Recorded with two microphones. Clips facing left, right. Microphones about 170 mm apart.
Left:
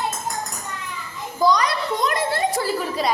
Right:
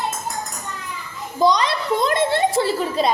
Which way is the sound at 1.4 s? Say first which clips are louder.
Right 1 dB; 25° right (ahead or behind).